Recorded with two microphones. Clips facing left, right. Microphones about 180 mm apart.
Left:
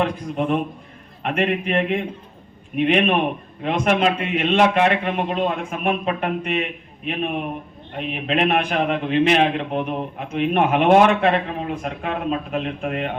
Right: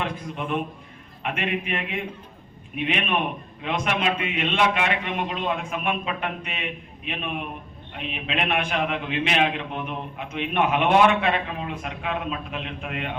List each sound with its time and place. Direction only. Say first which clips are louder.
0.0 s a man's voice: left 8 dB; 40° left (ahead or behind)
2.7 s a man's voice: left 8 dB; 50° left (ahead or behind)
8.1 s a man's voice: left 6 dB; 40° left (ahead or behind)